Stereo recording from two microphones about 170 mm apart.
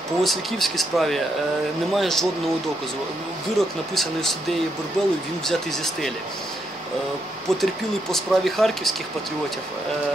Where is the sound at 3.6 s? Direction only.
Centre (ahead or behind).